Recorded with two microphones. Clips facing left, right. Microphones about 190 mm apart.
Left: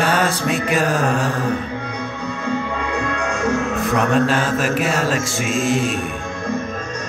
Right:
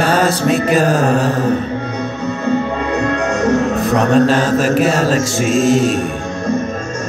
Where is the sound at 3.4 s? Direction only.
40° right (ahead or behind).